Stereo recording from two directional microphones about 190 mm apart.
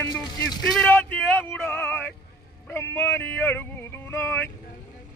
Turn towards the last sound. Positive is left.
turn(degrees=15)  # may be behind; listen again after turning